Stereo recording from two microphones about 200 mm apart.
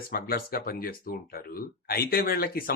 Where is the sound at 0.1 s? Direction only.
45° left (ahead or behind).